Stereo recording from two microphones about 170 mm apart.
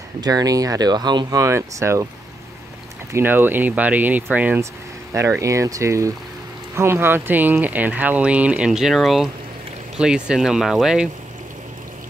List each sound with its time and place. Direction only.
0.2 s speech: 20° right (ahead or behind)
3.1 s speech: 15° right (ahead or behind)